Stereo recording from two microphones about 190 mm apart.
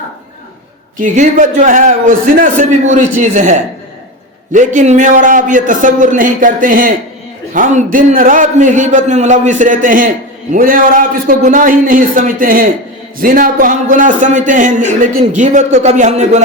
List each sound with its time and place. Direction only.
0.9 s a man's voice: 40° right (ahead or behind)
4.5 s a man's voice: 40° right (ahead or behind)